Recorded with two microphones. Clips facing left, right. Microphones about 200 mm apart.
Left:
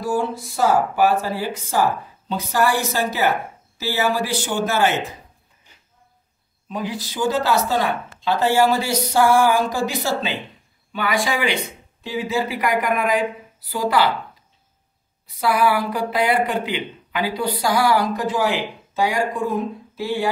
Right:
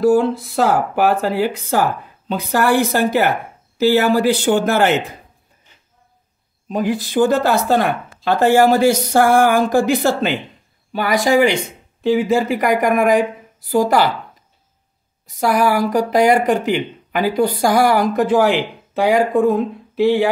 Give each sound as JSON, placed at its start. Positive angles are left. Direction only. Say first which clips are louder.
{"t": 0.0, "sound": "speech", "louder": "right 9 dB", "side_deg": -60}
{"t": 6.7, "sound": "speech", "louder": "right 9 dB", "side_deg": -50}
{"t": 10.9, "sound": "speech", "louder": "right 6 dB", "side_deg": -40}
{"t": 15.2, "sound": "speech", "louder": "right 3 dB", "side_deg": -45}